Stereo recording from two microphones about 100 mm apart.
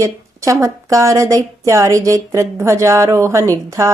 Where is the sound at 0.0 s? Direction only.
30° right (ahead or behind).